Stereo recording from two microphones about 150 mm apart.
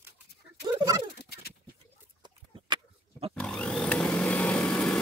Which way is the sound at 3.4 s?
5° left (ahead or behind).